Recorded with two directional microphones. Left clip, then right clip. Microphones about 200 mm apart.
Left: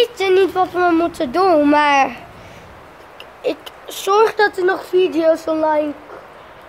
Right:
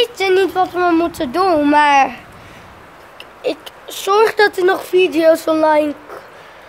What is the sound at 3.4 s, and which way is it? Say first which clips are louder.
Speech: right 1 dB; 5° right (ahead or behind).